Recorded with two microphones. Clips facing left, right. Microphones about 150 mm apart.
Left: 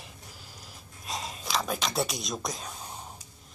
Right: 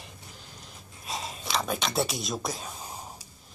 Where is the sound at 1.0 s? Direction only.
Centre (ahead or behind).